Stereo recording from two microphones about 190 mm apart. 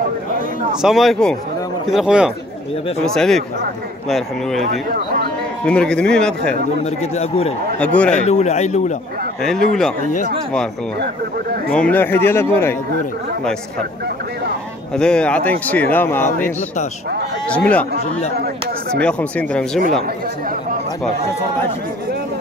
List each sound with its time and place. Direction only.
0.8 s speech: centre (ahead or behind)
4.6 s speech: 55° right (ahead or behind)
5.7 s speech: 5° left (ahead or behind)
6.8 s a man's voice: 35° left (ahead or behind)
7.8 s speech: 5° left (ahead or behind)
8.1 s a man's voice: 35° left (ahead or behind)
9.4 s speech: centre (ahead or behind)
11.7 s speech: 5° left (ahead or behind)
15.0 s speech: 5° left (ahead or behind)
17.5 s speech: 5° left (ahead or behind)
18.9 s speech: 5° left (ahead or behind)